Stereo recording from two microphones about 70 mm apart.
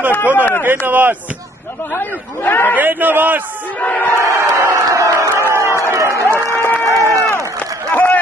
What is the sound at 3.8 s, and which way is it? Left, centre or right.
Speech, centre.